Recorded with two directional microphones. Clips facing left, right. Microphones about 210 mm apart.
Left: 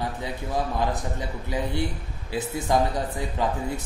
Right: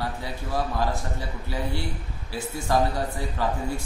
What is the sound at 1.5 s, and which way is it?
A man's voice, 20° left (ahead or behind).